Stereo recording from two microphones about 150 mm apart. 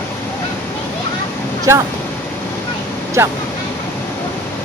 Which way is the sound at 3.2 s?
15° right (ahead or behind).